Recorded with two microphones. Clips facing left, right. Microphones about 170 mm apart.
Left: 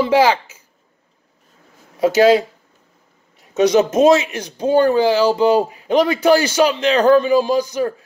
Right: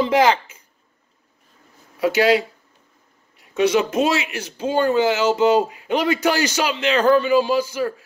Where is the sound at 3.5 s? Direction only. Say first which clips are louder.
Left 4 dB; 40° left (ahead or behind).